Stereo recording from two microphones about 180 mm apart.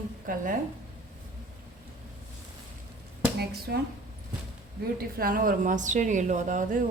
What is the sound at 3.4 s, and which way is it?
Speech, 60° right (ahead or behind).